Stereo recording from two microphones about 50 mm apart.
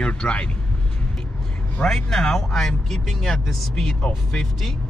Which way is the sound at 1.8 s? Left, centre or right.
Centre.